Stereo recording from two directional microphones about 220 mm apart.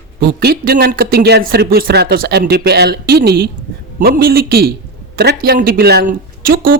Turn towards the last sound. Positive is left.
turn(degrees=-40)  # may be behind; listen again after turning